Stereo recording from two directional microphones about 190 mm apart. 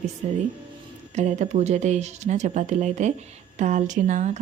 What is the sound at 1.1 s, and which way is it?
Speech, 40° right (ahead or behind).